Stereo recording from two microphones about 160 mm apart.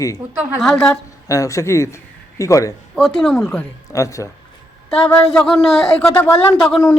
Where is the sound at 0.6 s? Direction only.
5° left (ahead or behind).